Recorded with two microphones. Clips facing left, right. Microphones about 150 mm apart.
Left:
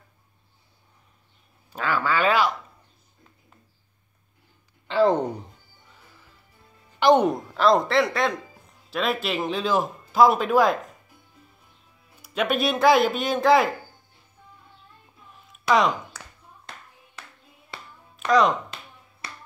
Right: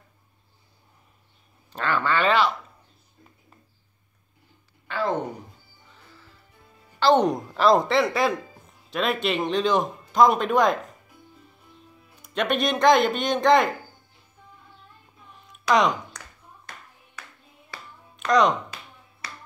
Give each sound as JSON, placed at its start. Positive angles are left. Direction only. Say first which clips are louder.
{"t": 1.7, "sound": "speech", "louder": "even", "side_deg": 5}
{"t": 4.8, "sound": "a sound", "louder": "left 7 dB", "side_deg": 30}
{"t": 7.0, "sound": "speech", "louder": "left 1 dB", "side_deg": 15}
{"t": 7.2, "sound": "speech", "louder": "even", "side_deg": 0}
{"t": 12.2, "sound": "speech", "louder": "even", "side_deg": 5}
{"t": 15.7, "sound": "speech", "louder": "even", "side_deg": 0}
{"t": 18.1, "sound": "music", "louder": "even", "side_deg": 0}